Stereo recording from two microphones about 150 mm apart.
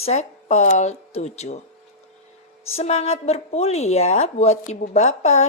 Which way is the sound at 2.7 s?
45° left (ahead or behind).